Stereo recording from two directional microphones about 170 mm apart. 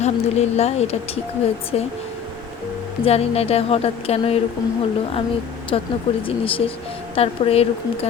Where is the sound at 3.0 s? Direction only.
35° left (ahead or behind).